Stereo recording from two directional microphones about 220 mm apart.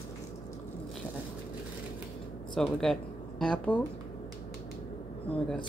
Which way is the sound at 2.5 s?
Centre (ahead or behind).